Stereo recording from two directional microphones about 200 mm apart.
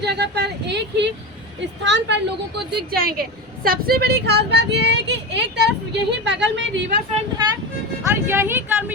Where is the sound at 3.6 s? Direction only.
50° right (ahead or behind).